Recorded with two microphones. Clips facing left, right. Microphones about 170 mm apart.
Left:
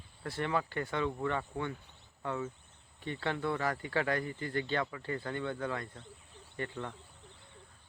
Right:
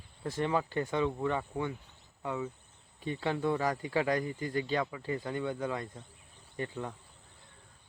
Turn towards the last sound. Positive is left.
turn(degrees=-15)  # may be behind; listen again after turning